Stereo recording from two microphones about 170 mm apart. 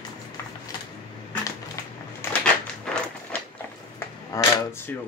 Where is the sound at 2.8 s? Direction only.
5° left (ahead or behind).